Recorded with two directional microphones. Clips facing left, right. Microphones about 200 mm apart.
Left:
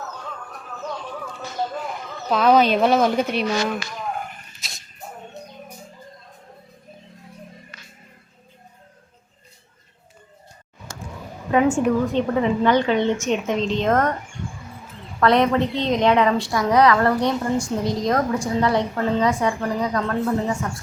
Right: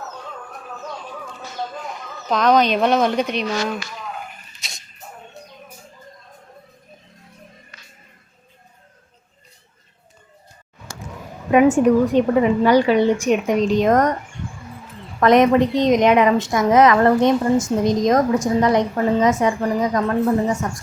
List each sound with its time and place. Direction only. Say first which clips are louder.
2.3 s speech: even; 5° left (ahead or behind)
4.6 s a sound: right 2 dB; centre (ahead or behind)
11.5 s a woman's voice: right 5 dB; 15° right (ahead or behind)
15.2 s a woman's voice: right 4 dB; 15° right (ahead or behind)